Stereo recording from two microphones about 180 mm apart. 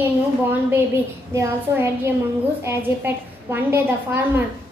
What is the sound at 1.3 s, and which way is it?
A woman's voice, 15° right (ahead or behind).